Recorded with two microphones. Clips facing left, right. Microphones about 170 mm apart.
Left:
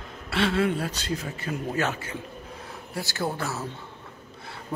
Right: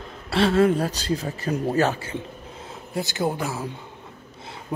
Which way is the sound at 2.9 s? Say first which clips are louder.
Right 5 dB; 20° right (ahead or behind).